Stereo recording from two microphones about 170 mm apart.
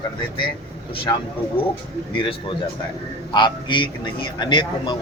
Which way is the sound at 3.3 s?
30° left (ahead or behind).